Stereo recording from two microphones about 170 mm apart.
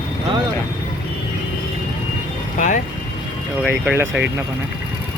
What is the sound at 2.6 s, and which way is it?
Speech, 50° left (ahead or behind).